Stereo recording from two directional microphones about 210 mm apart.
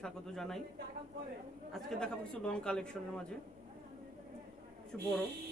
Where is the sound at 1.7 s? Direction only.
Centre (ahead or behind).